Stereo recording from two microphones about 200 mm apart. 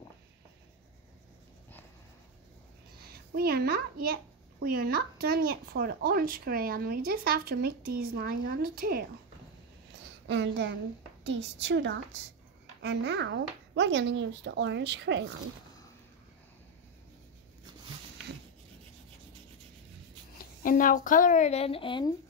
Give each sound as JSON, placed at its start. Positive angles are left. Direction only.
{"t": 3.3, "sound": "speech", "side_deg": -50}
{"t": 10.2, "sound": "a child's voice", "side_deg": -60}
{"t": 20.3, "sound": "a woman's voice", "side_deg": 45}